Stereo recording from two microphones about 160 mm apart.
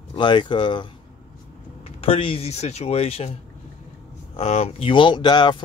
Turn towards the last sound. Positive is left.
turn(degrees=30)  # may be behind; listen again after turning